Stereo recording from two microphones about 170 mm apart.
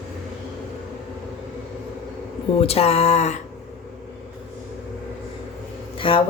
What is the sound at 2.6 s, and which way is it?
Speech, 35° left (ahead or behind).